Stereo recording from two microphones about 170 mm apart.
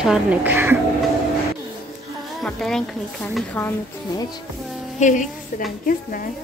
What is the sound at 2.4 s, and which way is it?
A woman's voice, centre (ahead or behind).